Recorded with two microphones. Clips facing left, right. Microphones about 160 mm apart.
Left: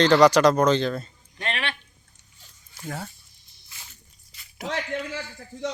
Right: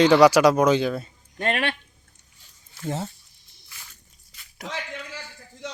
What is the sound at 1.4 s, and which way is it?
Speech, 45° right (ahead or behind).